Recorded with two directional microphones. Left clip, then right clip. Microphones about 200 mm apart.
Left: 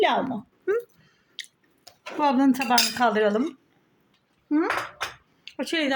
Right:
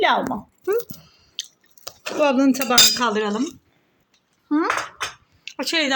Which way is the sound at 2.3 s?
25° left (ahead or behind).